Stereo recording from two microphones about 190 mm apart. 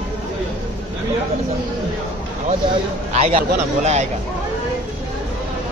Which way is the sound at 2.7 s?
30° right (ahead or behind).